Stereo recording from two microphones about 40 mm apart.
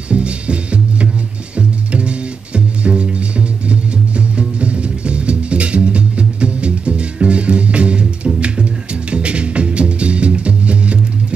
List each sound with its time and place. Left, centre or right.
0.1 s music: right